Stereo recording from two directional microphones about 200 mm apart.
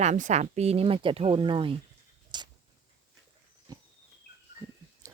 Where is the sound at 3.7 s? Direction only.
20° right (ahead or behind).